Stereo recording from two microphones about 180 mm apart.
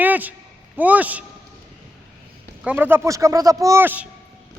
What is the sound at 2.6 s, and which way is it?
Speech, 10° right (ahead or behind).